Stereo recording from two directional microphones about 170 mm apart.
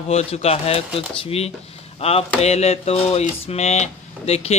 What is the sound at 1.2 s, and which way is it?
Speech, 35° left (ahead or behind).